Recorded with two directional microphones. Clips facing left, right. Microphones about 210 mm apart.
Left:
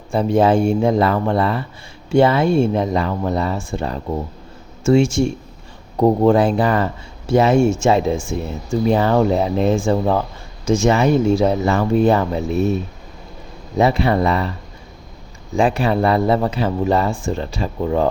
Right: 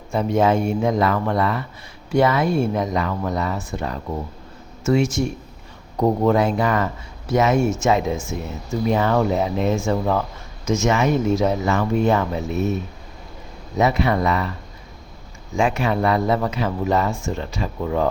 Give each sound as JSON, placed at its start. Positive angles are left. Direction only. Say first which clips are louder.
{"t": 0.1, "sound": "speech", "louder": "left 3 dB", "side_deg": 30}
{"t": 15.5, "sound": "speech", "louder": "left 3 dB", "side_deg": 35}